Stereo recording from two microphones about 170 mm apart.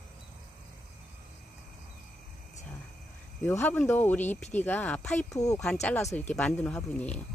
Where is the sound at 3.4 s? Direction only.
10° left (ahead or behind).